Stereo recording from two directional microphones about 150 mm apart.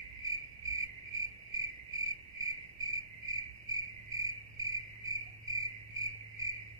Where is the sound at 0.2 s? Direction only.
20° right (ahead or behind).